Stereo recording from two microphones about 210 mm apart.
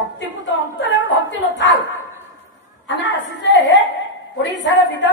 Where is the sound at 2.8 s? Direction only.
60° left (ahead or behind).